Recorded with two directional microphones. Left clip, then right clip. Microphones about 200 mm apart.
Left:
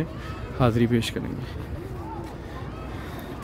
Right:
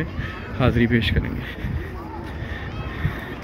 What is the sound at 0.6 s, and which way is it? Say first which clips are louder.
Speech: right 2 dB; 15° left (ahead or behind).